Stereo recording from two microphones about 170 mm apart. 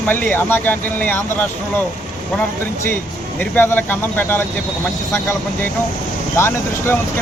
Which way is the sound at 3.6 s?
10° left (ahead or behind).